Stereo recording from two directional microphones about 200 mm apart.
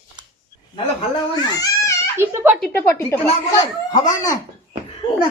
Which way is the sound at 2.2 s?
10° right (ahead or behind).